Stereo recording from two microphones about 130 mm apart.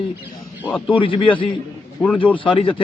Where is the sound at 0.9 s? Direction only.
40° left (ahead or behind).